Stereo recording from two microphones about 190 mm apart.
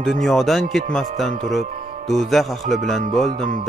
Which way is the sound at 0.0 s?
Centre (ahead or behind).